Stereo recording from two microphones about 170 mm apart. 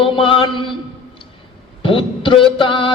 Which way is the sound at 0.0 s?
30° left (ahead or behind).